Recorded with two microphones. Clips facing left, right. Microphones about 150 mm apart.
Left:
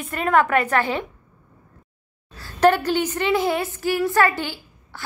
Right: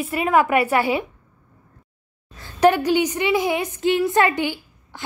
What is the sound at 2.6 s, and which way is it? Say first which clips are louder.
A woman's voice: right 1 dB; 10° right (ahead or behind).